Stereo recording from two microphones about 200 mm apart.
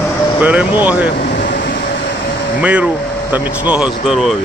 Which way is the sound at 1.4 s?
60° left (ahead or behind).